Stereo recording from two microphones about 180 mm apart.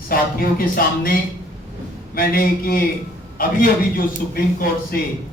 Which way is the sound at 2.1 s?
55° left (ahead or behind).